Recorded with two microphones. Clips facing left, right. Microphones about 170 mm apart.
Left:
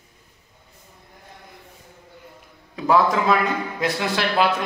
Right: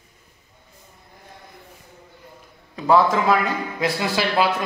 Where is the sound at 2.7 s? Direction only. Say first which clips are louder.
Right 1 dB; centre (ahead or behind).